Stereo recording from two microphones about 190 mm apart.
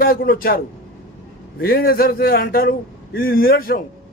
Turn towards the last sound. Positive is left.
turn(degrees=50)  # may be behind; listen again after turning